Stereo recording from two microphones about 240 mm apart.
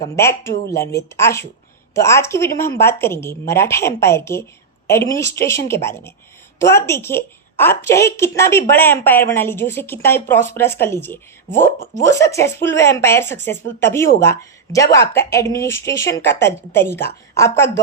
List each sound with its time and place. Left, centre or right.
0.0 s a woman's voice: centre